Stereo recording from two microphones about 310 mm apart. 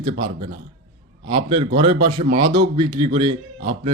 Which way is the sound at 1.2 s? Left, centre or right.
Centre.